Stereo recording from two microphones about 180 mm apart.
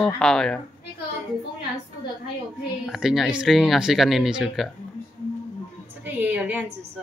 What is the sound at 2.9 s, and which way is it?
Speech, centre (ahead or behind).